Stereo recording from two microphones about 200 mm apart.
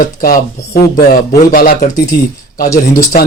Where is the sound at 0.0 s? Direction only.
45° left (ahead or behind).